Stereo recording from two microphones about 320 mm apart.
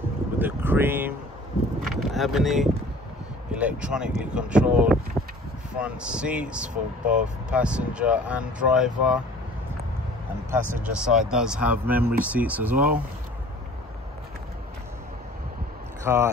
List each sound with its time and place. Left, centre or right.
0.4 s boat: centre
3.5 s speech: centre
10.5 s speech: centre
12.7 s speech: right
16.0 s speech: centre